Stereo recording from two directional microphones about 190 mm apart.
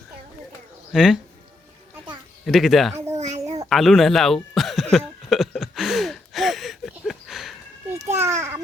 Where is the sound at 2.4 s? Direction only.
Centre (ahead or behind).